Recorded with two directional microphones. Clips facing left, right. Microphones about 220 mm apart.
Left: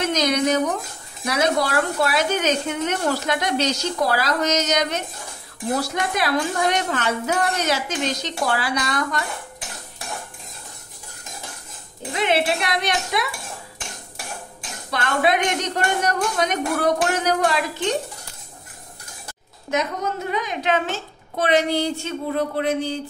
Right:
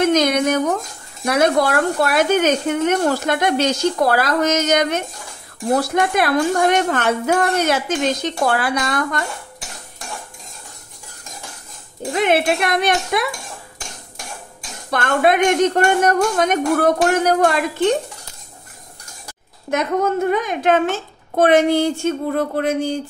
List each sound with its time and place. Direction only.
0.0 s speech: 55° right (ahead or behind)
12.1 s speech: 50° right (ahead or behind)
14.9 s speech: 50° right (ahead or behind)
19.7 s speech: 55° right (ahead or behind)